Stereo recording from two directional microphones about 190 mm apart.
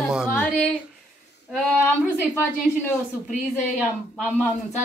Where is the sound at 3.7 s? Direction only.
Centre (ahead or behind).